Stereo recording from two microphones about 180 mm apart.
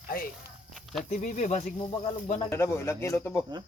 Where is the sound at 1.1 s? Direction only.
40° left (ahead or behind).